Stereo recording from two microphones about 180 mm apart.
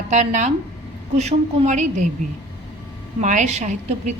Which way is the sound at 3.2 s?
40° right (ahead or behind).